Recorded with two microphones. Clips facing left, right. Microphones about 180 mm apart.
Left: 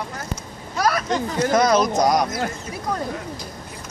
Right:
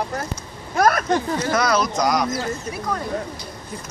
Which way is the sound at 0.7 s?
50° right (ahead or behind).